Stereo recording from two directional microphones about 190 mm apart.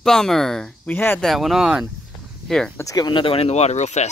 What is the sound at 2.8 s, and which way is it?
Speech, 20° left (ahead or behind).